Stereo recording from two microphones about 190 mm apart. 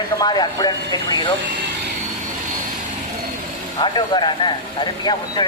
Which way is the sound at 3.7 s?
25° left (ahead or behind).